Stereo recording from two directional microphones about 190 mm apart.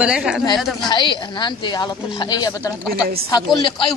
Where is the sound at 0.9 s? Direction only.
25° left (ahead or behind).